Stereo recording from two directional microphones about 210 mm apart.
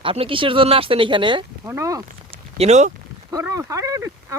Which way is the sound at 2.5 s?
30° right (ahead or behind).